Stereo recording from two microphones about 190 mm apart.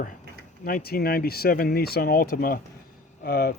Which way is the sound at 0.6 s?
50° left (ahead or behind).